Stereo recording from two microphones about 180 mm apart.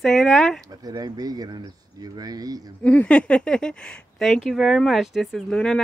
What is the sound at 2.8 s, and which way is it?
Speech, 5° left (ahead or behind).